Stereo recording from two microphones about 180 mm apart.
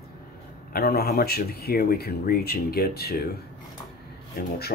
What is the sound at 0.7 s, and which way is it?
Speech, 60° left (ahead or behind).